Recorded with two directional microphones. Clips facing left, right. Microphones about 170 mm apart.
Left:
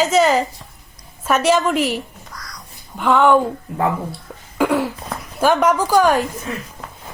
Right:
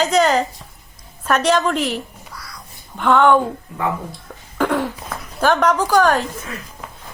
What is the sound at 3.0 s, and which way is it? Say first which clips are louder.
Speech: even; 5° left (ahead or behind).